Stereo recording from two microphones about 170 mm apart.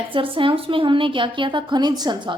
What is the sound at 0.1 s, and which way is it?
A woman's voice, 30° right (ahead or behind).